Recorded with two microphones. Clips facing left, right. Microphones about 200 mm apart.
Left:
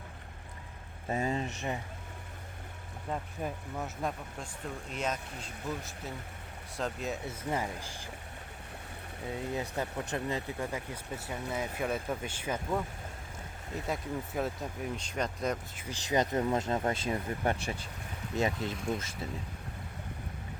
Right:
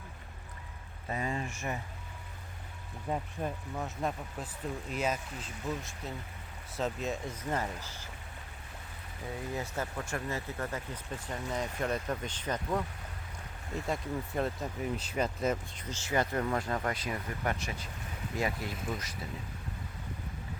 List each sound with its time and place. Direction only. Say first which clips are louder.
1.0 s speech: left 3 dB; 25° left (ahead or behind)
3.1 s speech: right 2 dB; 10° right (ahead or behind)
3.4 s speech: even; centre (ahead or behind)
9.5 s speech: left 1 dB; 20° left (ahead or behind); by 15.5 s 5° right (ahead or behind)
15.7 s speech: left 2 dB; 10° left (ahead or behind)
18.7 s speech: left 3 dB; 5° right (ahead or behind)